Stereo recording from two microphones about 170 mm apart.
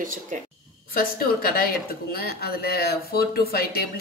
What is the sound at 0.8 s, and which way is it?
Speech, 60° left (ahead or behind).